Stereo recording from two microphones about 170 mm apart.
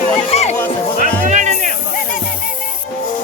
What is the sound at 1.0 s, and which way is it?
Music, 45° right (ahead or behind).